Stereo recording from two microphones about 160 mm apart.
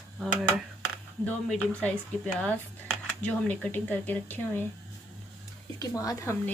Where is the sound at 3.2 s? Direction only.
10° left (ahead or behind).